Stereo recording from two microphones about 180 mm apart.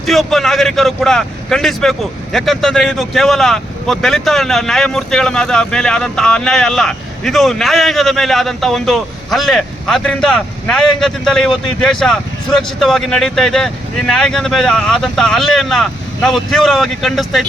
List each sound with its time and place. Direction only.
0.0 s speech: centre (ahead or behind)